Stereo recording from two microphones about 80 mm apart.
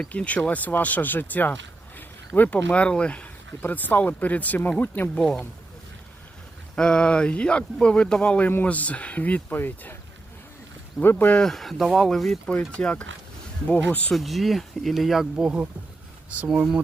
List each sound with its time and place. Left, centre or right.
0.1 s speech: centre
2.0 s a sound: left
2.7 s speech: centre
5.1 s speech: centre
6.7 s speech: centre; by 10.0 s left
11.0 s speech: left
11.3 s speech: centre
12.5 s speech: centre
14.1 s speech: centre